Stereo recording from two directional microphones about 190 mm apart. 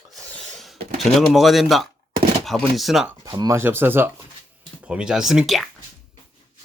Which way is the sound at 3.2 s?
20° right (ahead or behind).